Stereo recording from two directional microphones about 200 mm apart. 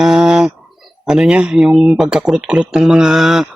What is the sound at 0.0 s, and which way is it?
Speech, 5° right (ahead or behind).